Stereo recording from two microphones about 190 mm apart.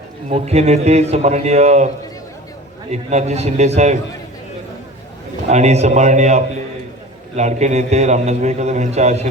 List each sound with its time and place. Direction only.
0.3 s a man's voice: 35° right (ahead or behind)
2.9 s a man's voice: 35° right (ahead or behind)
5.5 s a man's voice: 35° right (ahead or behind)